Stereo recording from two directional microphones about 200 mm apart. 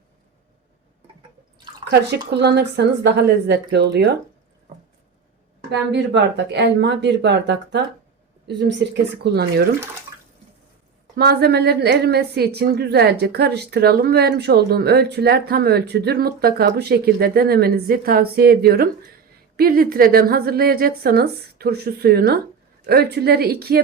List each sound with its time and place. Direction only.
1.8 s speech: 55° right (ahead or behind)
5.9 s speech: 60° right (ahead or behind)
11.2 s a woman's voice: 50° right (ahead or behind)